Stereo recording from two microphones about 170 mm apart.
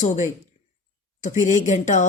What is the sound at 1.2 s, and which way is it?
Speech, 45° left (ahead or behind).